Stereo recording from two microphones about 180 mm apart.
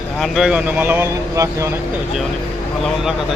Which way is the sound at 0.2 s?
Centre (ahead or behind).